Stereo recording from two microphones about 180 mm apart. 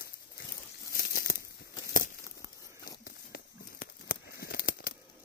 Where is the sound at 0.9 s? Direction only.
50° left (ahead or behind).